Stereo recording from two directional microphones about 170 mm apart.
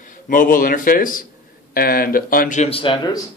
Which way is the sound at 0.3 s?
50° left (ahead or behind).